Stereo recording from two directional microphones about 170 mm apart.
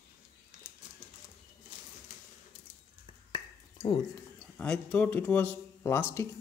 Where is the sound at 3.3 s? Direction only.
20° left (ahead or behind).